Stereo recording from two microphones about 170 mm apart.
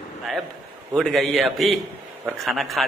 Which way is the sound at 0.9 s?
Centre (ahead or behind).